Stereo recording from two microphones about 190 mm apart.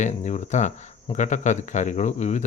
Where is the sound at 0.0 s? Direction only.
40° left (ahead or behind).